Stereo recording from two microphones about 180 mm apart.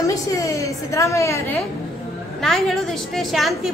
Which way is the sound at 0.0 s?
20° left (ahead or behind).